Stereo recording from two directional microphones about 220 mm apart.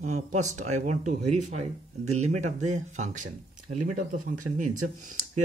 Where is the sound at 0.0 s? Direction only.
30° right (ahead or behind).